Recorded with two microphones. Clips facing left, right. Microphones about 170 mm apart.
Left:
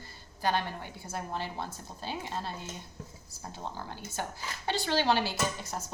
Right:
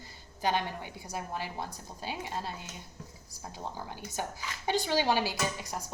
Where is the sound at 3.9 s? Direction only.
15° right (ahead or behind).